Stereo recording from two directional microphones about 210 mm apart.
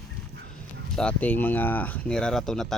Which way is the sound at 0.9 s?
5° left (ahead or behind).